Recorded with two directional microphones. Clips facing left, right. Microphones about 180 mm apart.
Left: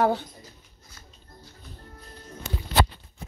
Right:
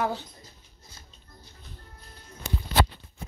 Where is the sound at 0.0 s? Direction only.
50° left (ahead or behind).